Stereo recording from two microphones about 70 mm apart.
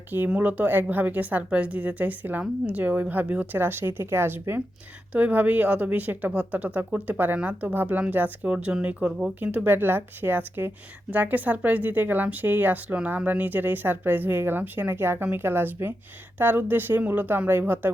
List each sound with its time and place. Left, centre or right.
0.3 s speech: right
5.1 s speech: right
9.4 s speech: right